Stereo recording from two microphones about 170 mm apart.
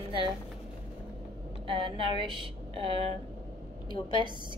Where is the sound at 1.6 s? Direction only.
30° right (ahead or behind).